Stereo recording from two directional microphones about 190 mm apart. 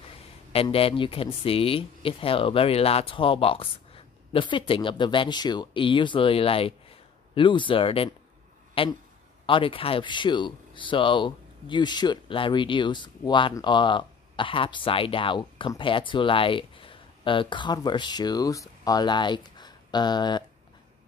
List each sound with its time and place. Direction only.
0.5 s speech: 30° left (ahead or behind)